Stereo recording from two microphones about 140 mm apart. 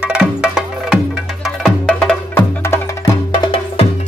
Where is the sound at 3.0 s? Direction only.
30° left (ahead or behind).